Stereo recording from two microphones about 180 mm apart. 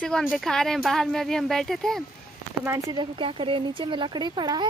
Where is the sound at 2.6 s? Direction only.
15° right (ahead or behind).